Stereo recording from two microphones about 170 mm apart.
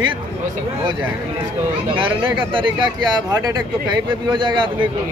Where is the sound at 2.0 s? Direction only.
30° right (ahead or behind).